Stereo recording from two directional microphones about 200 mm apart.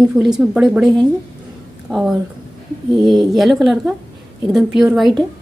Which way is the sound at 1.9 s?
5° right (ahead or behind).